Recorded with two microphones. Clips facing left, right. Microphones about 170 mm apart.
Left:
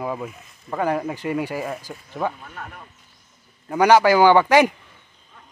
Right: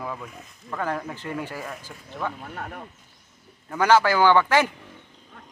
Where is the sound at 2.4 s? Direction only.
40° right (ahead or behind).